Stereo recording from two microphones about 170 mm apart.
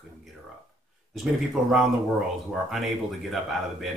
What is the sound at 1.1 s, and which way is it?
Speech, centre (ahead or behind).